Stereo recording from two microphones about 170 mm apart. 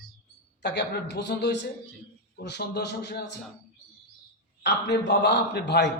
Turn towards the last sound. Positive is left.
turn(degrees=80)